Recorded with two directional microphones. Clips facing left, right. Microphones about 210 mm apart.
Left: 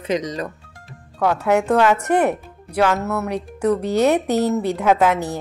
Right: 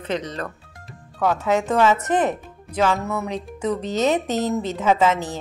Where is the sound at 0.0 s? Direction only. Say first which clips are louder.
Left 4 dB; 10° left (ahead or behind).